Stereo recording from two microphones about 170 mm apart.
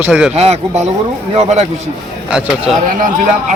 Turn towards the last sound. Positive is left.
turn(degrees=-50)  # may be behind; listen again after turning